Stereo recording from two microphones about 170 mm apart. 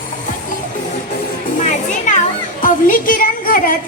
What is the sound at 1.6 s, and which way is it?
Music, 45° left (ahead or behind).